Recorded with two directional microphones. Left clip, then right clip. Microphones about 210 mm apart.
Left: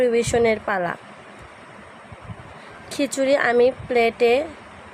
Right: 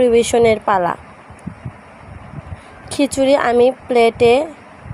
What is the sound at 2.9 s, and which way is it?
Speech, 20° right (ahead or behind).